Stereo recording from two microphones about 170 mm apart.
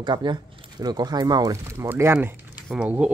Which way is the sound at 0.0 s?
25° right (ahead or behind).